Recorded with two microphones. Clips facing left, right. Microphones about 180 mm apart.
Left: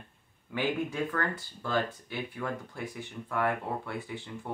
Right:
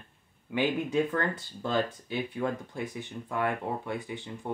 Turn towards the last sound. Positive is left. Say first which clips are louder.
# right 2 dB
turn(degrees=-20)  # may be behind; listen again after turning